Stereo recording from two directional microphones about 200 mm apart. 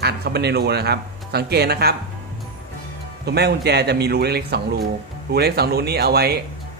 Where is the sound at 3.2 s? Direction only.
55° right (ahead or behind).